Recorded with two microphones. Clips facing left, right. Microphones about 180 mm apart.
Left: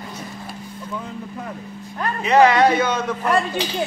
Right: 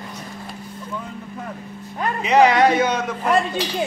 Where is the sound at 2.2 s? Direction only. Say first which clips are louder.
Left 1 dB; 20° right (ahead or behind).